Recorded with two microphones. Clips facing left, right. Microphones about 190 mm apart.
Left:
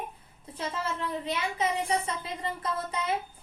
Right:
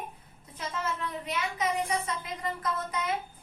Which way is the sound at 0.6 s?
30° left (ahead or behind).